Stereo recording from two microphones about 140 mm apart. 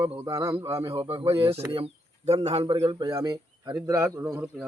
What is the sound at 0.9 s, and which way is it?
Speech, 40° right (ahead or behind).